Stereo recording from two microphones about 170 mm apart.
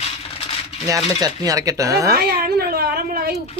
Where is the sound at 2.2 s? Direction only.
65° right (ahead or behind).